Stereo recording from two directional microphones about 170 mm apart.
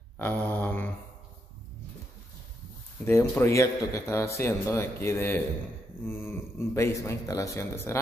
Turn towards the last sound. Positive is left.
turn(degrees=15)  # may be behind; listen again after turning